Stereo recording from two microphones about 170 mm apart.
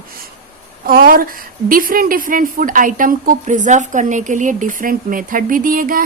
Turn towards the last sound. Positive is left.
turn(degrees=-55)  # may be behind; listen again after turning